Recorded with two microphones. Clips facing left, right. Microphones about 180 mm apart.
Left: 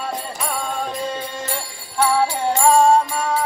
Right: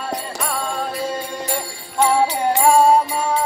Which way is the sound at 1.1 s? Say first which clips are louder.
Right 2 dB; 15° right (ahead or behind).